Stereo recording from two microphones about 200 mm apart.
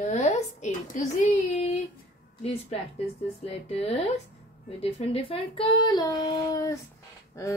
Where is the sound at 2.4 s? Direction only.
30° left (ahead or behind).